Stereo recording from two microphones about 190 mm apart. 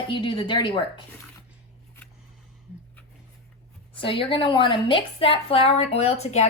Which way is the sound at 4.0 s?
25° left (ahead or behind).